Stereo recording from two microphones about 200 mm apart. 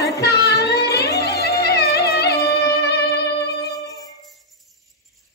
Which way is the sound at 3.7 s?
20° left (ahead or behind).